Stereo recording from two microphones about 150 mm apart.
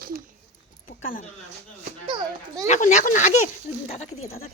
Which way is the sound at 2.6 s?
55° left (ahead or behind).